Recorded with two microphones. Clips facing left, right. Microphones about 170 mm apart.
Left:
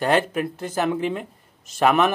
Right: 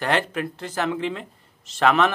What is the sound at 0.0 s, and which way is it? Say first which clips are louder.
Speech: left 3 dB; 20° left (ahead or behind).